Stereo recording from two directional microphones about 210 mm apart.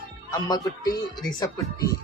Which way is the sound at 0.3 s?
20° left (ahead or behind).